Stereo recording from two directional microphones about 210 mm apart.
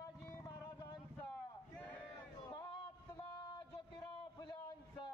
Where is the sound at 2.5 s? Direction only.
20° left (ahead or behind).